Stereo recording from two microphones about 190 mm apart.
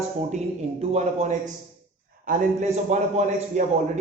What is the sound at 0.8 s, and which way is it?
A man's voice, 35° right (ahead or behind).